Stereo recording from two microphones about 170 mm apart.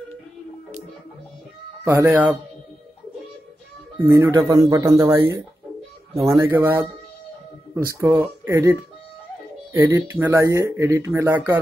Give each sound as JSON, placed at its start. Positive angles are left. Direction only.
{"t": 1.9, "sound": "speech", "side_deg": -15}
{"t": 4.0, "sound": "a man's voice", "side_deg": -15}
{"t": 8.0, "sound": "speech", "side_deg": -15}